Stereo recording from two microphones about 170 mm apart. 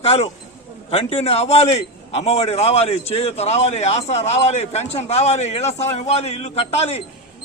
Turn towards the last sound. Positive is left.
turn(degrees=40)  # may be behind; listen again after turning